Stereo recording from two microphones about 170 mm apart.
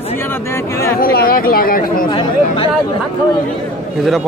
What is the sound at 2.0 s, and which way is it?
Chatter, 30° left (ahead or behind).